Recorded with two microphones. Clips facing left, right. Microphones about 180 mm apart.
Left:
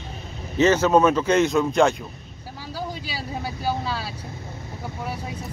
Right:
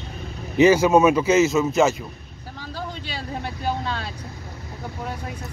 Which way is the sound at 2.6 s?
10° left (ahead or behind).